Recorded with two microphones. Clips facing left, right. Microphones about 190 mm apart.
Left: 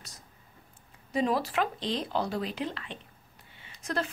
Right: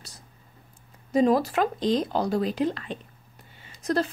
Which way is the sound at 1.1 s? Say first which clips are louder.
Right 7 dB; 45° right (ahead or behind).